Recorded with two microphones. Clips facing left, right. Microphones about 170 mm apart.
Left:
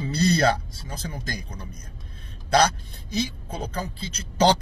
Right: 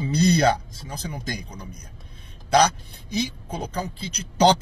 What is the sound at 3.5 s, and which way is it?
Speech, 15° right (ahead or behind).